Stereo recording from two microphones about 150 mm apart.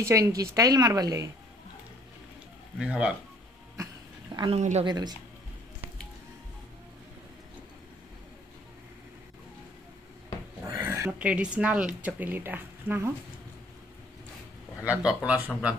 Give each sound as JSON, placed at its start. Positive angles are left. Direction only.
{"t": 0.0, "sound": "speech", "side_deg": -20}
{"t": 2.8, "sound": "speech", "side_deg": -10}
{"t": 4.6, "sound": "speech", "side_deg": -50}
{"t": 4.8, "sound": "speech", "side_deg": -30}
{"t": 10.8, "sound": "a sound", "side_deg": -20}
{"t": 11.1, "sound": "speech", "side_deg": -10}
{"t": 14.8, "sound": "speech", "side_deg": -5}